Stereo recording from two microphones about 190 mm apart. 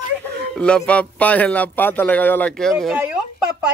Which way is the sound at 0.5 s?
5° left (ahead or behind).